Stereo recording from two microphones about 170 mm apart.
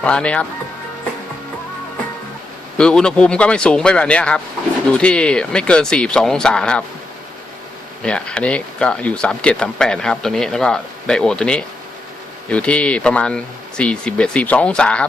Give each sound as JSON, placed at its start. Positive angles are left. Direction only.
{"t": 0.0, "sound": "speech", "side_deg": 5}
{"t": 2.7, "sound": "speech", "side_deg": 5}
{"t": 8.0, "sound": "speech", "side_deg": 5}